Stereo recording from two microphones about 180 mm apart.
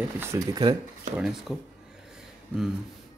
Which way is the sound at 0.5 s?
25° right (ahead or behind).